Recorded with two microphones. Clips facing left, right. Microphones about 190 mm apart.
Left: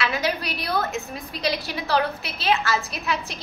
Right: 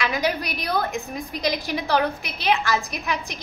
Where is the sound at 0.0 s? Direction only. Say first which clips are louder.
Right 1 dB; 15° right (ahead or behind).